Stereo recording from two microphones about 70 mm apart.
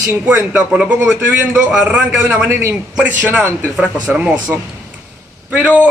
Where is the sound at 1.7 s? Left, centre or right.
Centre.